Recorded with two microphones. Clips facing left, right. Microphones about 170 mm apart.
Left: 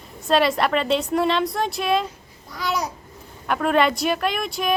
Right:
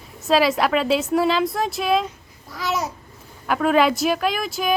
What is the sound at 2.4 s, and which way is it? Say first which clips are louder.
Babbling: right 1 dB; centre (ahead or behind).